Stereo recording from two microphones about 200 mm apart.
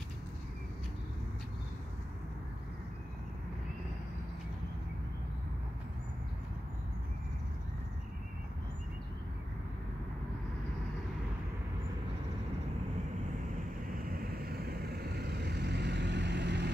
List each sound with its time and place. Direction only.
14.0 s vehicle: 45° right (ahead or behind)